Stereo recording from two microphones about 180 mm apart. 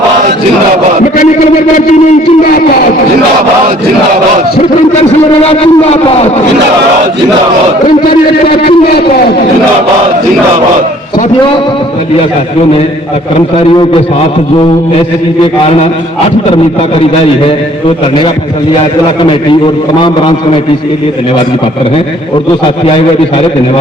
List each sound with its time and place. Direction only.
5.4 s a man's voice: 35° left (ahead or behind)
8.0 s a man's voice: 60° left (ahead or behind)
15.4 s a man's voice: 30° left (ahead or behind)
19.2 s a man's voice: 25° left (ahead or behind)